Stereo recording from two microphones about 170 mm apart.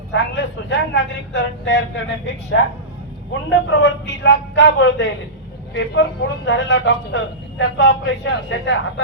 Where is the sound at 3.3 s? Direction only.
90° left.